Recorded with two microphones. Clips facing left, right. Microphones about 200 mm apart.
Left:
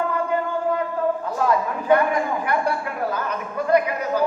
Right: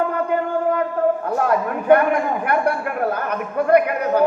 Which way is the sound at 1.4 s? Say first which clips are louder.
Right 2 dB; 60° right (ahead or behind).